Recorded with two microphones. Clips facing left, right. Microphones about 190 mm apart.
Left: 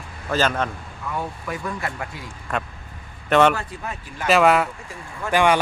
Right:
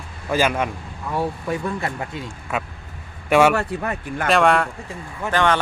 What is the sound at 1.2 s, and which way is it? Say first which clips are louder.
Speech: right 7 dB; 30° right (ahead or behind).